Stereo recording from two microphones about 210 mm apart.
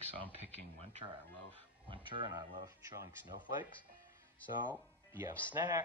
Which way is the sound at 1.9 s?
20° right (ahead or behind).